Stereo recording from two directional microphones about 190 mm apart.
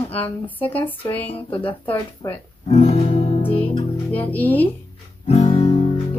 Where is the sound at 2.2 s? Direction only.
15° left (ahead or behind).